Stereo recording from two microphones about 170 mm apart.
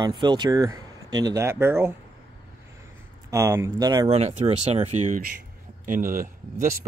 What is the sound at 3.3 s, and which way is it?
Speech, 15° right (ahead or behind).